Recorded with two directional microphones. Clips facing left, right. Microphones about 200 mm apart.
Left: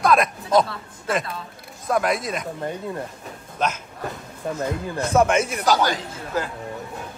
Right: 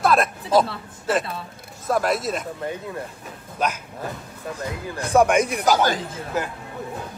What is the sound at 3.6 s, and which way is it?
Speech, 10° right (ahead or behind).